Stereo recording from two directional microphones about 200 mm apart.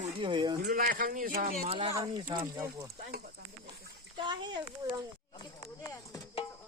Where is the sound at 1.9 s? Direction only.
20° right (ahead or behind).